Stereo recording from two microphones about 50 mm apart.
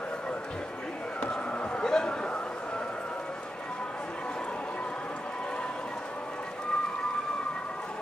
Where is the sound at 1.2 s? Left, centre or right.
Left.